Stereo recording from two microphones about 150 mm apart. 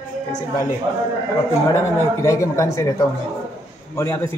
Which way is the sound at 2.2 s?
20° left (ahead or behind).